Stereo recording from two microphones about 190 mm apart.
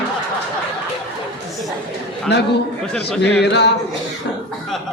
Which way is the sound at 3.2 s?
60° left (ahead or behind).